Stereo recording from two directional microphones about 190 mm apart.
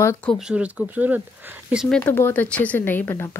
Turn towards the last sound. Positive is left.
turn(degrees=15)  # may be behind; listen again after turning